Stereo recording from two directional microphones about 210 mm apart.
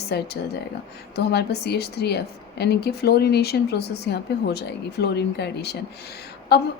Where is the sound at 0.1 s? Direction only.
50° left (ahead or behind).